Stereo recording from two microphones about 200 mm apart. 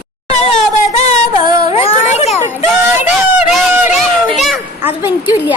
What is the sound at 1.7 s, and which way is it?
Children playing, 30° left (ahead or behind).